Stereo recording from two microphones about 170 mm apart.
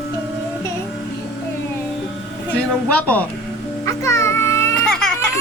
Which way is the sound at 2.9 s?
10° left (ahead or behind).